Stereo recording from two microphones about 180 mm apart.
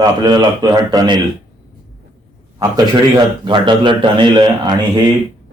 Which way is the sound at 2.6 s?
20° right (ahead or behind).